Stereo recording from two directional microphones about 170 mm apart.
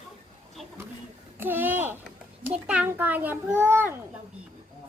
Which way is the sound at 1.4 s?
10° right (ahead or behind).